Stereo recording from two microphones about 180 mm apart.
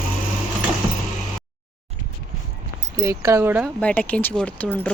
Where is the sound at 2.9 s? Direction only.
15° right (ahead or behind).